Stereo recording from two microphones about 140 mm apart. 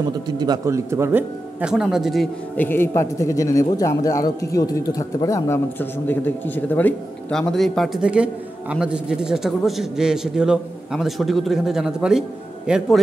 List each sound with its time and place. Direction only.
0.4 s speech: 25° right (ahead or behind)
1.6 s a man's voice: 5° right (ahead or behind)
2.5 s a man's voice: 15° left (ahead or behind); by 13.0 s 5° right (ahead or behind)